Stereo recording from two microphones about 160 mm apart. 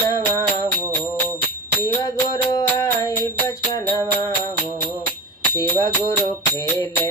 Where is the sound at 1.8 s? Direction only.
20° left (ahead or behind).